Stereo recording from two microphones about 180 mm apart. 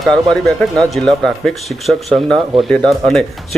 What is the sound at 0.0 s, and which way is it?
Speech, centre (ahead or behind).